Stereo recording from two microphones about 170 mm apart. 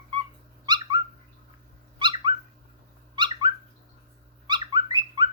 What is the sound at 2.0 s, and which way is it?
Dog, 30° right (ahead or behind).